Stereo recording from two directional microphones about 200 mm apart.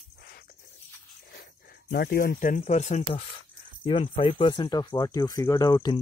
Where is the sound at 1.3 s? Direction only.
55° left (ahead or behind).